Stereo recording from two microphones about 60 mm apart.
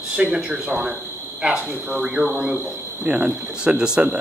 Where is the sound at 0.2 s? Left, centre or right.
Centre.